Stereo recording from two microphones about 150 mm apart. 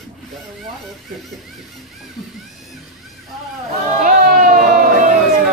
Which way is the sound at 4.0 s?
70° right (ahead or behind).